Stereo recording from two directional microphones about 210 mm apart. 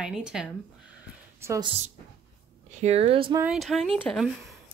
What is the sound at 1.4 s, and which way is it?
Speech, 15° right (ahead or behind).